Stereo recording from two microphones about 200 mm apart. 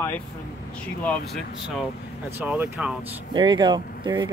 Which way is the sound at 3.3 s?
20° right (ahead or behind).